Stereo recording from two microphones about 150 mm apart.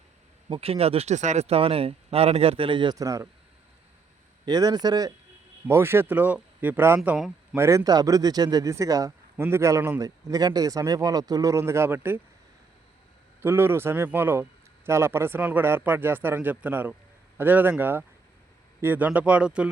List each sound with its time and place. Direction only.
0.5 s speech: 40° right (ahead or behind); by 3.2 s 25° right (ahead or behind)
4.4 s speech: 25° right (ahead or behind)
5.6 s speech: 15° right (ahead or behind)
13.4 s a man's voice: 15° right (ahead or behind)